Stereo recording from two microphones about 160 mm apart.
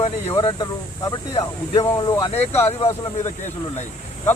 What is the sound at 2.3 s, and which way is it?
Speech, 40° left (ahead or behind).